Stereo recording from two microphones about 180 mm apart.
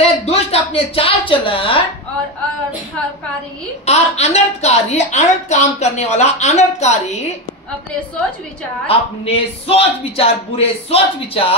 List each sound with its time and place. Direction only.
0.0 s a sound: 35° left (ahead or behind)
3.8 s a woman's voice: 35° left (ahead or behind)
8.8 s a woman's voice: 35° left (ahead or behind)